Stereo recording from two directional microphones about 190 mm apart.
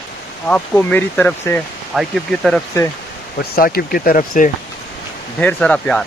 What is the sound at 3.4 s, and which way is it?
Speech, 50° left (ahead or behind).